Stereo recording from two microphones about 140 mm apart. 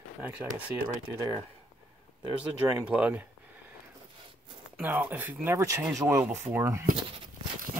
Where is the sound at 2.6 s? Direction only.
20° right (ahead or behind).